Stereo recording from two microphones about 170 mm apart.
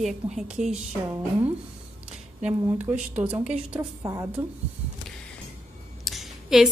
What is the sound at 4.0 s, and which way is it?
Speech, 20° right (ahead or behind).